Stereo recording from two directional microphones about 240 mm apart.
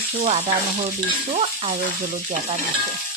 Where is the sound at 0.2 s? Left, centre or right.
Right.